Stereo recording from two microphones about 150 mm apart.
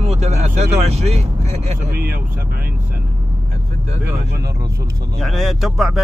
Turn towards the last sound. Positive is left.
turn(degrees=0)  # may be behind; listen again after turning